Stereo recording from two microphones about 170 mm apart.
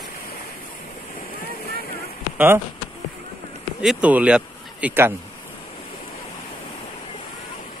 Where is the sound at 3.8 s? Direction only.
5° right (ahead or behind).